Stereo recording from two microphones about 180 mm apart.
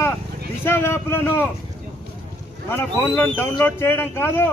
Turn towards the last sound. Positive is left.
turn(degrees=10)  # may be behind; listen again after turning